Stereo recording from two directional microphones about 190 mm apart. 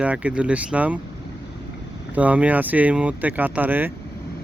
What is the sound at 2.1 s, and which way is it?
Speech, 5° right (ahead or behind).